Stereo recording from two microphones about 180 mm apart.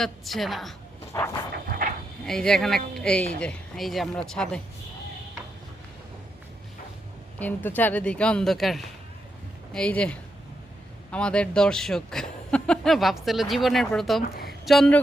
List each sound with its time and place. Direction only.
0.0 s speech: centre (ahead or behind)
1.1 s dog: 15° left (ahead or behind)
1.6 s dog: 55° right (ahead or behind)
2.2 s speech: 5° left (ahead or behind)
7.3 s speech: 10° left (ahead or behind)
14.2 s a woman's voice: 55° left (ahead or behind)
14.6 s speech: centre (ahead or behind)